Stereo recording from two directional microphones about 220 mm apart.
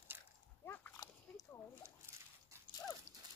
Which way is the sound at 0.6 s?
10° left (ahead or behind).